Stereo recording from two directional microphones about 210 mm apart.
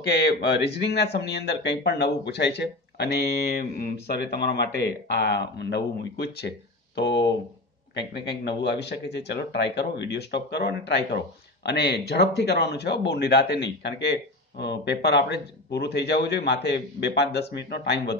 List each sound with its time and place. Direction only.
0.3 s a man's voice: 50° left (ahead or behind)